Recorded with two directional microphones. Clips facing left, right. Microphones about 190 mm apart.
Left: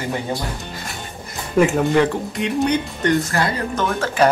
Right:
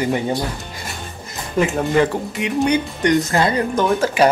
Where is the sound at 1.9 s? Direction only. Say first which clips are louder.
Even; 5° right (ahead or behind).